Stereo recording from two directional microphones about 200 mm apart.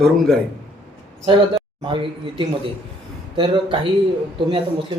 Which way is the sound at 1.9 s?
25° right (ahead or behind).